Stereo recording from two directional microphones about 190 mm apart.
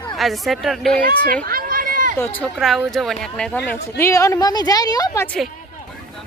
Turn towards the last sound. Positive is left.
turn(degrees=15)  # may be behind; listen again after turning